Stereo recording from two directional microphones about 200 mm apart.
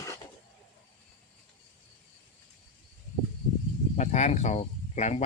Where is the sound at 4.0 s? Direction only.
35° left (ahead or behind).